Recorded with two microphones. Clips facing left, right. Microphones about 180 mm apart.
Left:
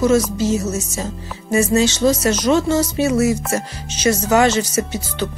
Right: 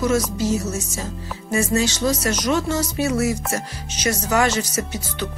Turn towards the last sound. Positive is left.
turn(degrees=25)  # may be behind; listen again after turning